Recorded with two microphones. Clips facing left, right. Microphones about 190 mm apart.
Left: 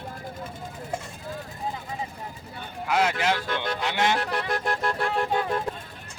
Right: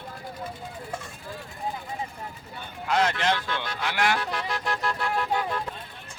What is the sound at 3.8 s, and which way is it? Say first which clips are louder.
Speech: even; 20° left (ahead or behind).